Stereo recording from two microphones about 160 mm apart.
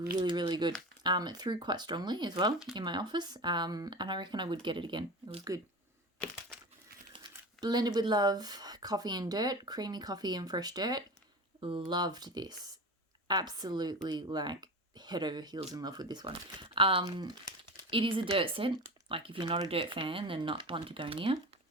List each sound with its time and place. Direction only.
0.2 s speech: 25° right (ahead or behind)
7.1 s speech: 25° right (ahead or behind)